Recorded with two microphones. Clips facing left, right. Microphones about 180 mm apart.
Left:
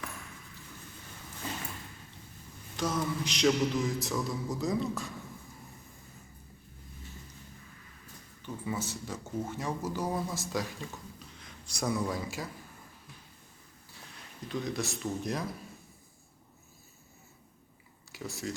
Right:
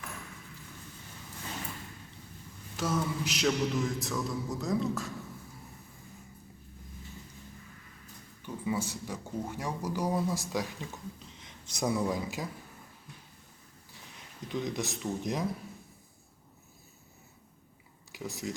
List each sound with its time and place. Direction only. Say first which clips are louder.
2.7 s mantra: even; 5° right (ahead or behind)
8.4 s speech: right 3 dB; 10° right (ahead or behind)
14.4 s speech: even; 15° right (ahead or behind)
18.1 s speech: right 1 dB; 15° right (ahead or behind)